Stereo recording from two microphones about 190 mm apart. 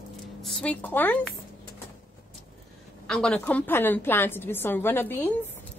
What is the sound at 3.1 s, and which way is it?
A woman's voice, 5° left (ahead or behind).